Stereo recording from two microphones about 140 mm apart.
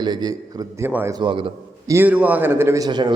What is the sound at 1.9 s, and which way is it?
Speech, 15° right (ahead or behind).